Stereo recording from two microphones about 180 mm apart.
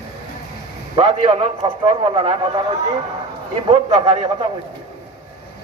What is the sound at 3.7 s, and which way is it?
Speech, 25° right (ahead or behind).